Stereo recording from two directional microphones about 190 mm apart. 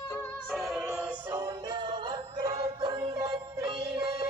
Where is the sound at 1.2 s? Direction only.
15° right (ahead or behind).